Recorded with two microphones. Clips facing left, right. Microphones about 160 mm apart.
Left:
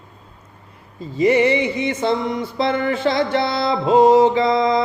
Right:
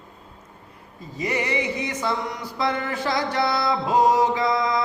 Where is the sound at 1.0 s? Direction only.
25° left (ahead or behind).